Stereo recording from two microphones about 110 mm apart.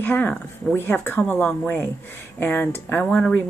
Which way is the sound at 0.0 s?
15° left (ahead or behind).